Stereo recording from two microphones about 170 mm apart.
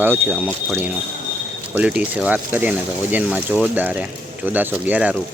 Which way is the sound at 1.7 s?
5° right (ahead or behind).